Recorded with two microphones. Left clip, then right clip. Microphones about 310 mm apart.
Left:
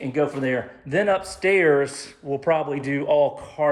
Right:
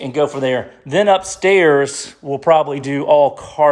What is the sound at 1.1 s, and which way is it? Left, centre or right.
Speech, right.